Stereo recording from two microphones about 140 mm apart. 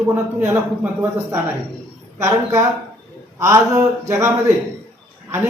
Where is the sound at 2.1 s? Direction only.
20° right (ahead or behind).